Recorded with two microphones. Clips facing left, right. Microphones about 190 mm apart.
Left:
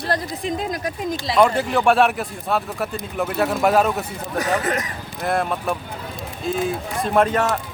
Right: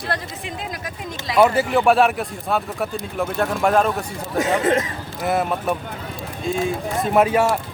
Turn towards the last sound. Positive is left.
turn(degrees=-10)  # may be behind; listen again after turning